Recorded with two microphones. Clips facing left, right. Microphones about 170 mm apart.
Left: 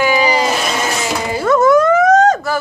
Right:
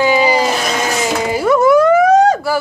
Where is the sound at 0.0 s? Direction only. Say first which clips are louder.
Right 2 dB; 20° right (ahead or behind).